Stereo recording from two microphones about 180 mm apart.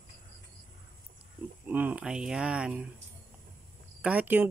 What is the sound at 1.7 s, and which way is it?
Speech, 10° right (ahead or behind).